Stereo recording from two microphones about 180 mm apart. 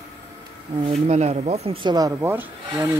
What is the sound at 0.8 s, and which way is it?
Speech, 40° right (ahead or behind).